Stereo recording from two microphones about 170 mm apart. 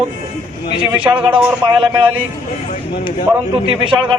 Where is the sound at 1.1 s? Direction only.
15° right (ahead or behind).